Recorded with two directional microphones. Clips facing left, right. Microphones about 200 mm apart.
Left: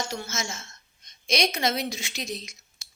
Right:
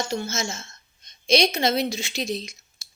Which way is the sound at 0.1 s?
25° right (ahead or behind).